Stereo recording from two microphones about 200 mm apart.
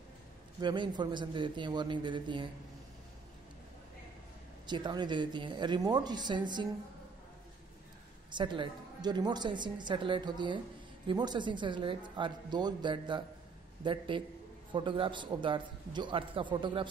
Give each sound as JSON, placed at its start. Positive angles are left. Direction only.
{"t": 0.6, "sound": "a woman's voice", "side_deg": -20}
{"t": 4.6, "sound": "a woman's voice", "side_deg": -20}
{"t": 8.3, "sound": "a woman's voice", "side_deg": -25}